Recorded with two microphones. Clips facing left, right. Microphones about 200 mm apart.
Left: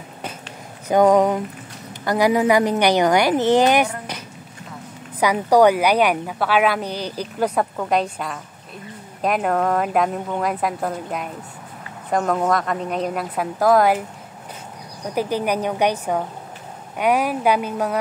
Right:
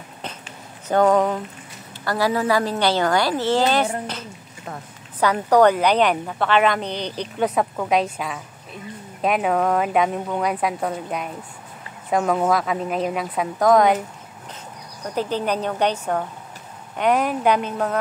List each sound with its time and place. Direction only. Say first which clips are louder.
0.8 s a woman's voice: left 2 dB; 15° left (ahead or behind)
5.2 s a woman's voice: left 1 dB; 10° left (ahead or behind)
15.1 s a woman's voice: left 2 dB; 10° left (ahead or behind)